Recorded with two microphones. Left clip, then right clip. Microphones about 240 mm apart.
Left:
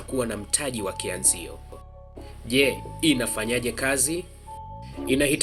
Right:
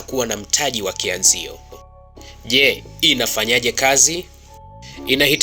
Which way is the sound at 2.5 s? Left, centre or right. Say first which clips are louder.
Right 7 dB; centre.